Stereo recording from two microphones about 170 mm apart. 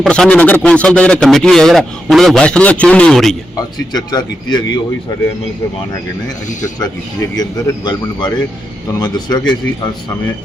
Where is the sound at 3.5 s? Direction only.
25° left (ahead or behind).